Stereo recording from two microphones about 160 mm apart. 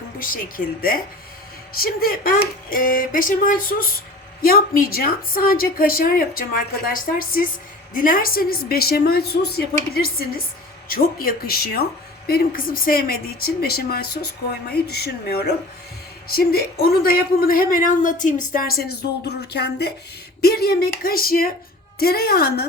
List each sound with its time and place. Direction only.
0.2 s a woman's voice: 60° left (ahead or behind); by 11.9 s 75° left (ahead or behind)
12.3 s a man's voice: 65° left (ahead or behind)
14.7 s a woman's voice: 90° left
20.4 s a man's voice: 75° left (ahead or behind)